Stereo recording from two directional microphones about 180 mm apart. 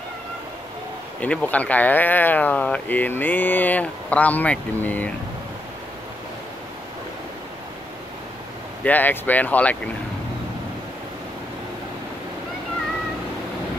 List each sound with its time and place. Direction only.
1.2 s speech: 10° left (ahead or behind)
8.8 s speech: 10° left (ahead or behind)